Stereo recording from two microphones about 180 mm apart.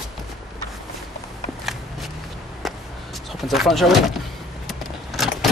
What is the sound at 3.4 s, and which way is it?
Speech, centre (ahead or behind).